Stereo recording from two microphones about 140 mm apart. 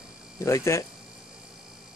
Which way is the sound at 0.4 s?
20° left (ahead or behind).